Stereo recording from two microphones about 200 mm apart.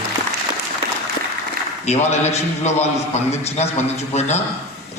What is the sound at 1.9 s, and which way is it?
A man's voice, 35° left (ahead or behind).